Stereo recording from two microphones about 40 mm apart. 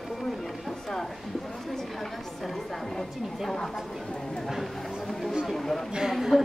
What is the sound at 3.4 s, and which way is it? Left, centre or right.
Speech, centre.